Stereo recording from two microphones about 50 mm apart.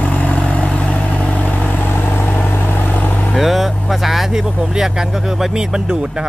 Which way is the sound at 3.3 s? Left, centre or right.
Centre.